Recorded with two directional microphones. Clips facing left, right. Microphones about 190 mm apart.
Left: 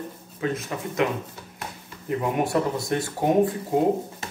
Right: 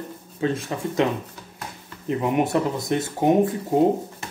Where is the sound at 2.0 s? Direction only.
20° right (ahead or behind).